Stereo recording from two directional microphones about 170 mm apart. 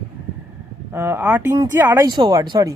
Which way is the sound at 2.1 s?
25° right (ahead or behind).